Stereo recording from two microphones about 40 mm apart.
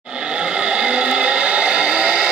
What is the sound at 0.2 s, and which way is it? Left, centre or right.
Vehicle, right.